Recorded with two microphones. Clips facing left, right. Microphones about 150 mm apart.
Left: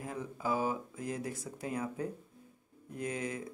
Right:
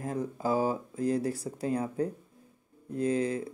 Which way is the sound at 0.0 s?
40° right (ahead or behind).